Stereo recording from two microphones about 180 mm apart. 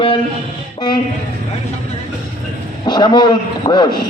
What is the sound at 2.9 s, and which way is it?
A man's voice, 25° left (ahead or behind).